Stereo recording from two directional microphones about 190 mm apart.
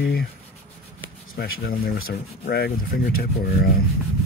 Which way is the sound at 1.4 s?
50° left (ahead or behind).